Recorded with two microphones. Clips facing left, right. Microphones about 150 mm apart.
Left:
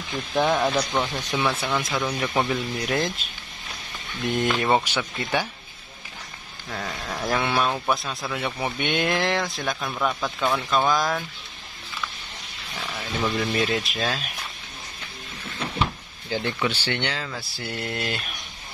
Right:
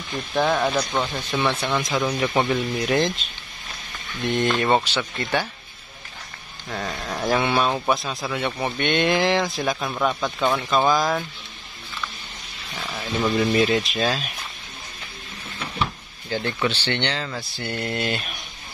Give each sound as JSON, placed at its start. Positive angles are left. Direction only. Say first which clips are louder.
{"t": 0.3, "sound": "speech", "louder": "right 1 dB", "side_deg": 5}
{"t": 4.3, "sound": "speech", "louder": "right 2 dB", "side_deg": 5}
{"t": 6.7, "sound": "speech", "louder": "right 3 dB", "side_deg": -5}
{"t": 12.8, "sound": "speech", "louder": "right 3 dB", "side_deg": -10}
{"t": 15.8, "sound": "drawer open or close", "louder": "right 1 dB", "side_deg": 15}
{"t": 16.6, "sound": "speech", "louder": "right 2 dB", "side_deg": 10}